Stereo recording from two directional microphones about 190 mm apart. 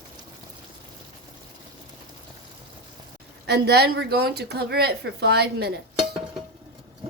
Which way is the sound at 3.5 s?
60° right (ahead or behind).